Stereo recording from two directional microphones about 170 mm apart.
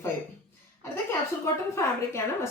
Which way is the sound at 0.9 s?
15° left (ahead or behind).